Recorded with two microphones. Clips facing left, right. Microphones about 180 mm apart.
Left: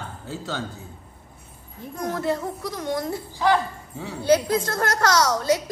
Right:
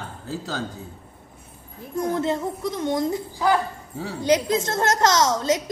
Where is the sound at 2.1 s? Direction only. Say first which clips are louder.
Left 1 dB; 25° right (ahead or behind).